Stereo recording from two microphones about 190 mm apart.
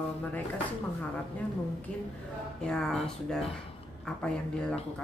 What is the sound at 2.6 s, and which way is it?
Speech, 5° left (ahead or behind).